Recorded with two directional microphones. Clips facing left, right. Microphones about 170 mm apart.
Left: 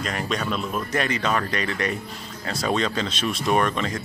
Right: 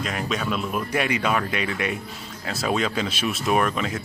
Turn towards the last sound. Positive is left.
turn(degrees=-5)  # may be behind; listen again after turning